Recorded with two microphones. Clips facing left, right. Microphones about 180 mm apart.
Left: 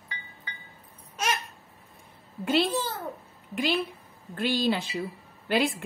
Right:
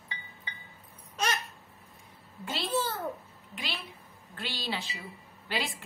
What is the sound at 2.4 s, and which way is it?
Speech, 65° left (ahead or behind).